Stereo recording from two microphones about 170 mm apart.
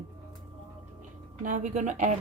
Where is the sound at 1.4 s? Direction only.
45° right (ahead or behind).